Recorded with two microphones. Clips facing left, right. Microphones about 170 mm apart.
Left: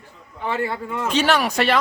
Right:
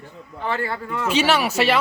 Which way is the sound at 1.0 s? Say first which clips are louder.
Even; 10° right (ahead or behind).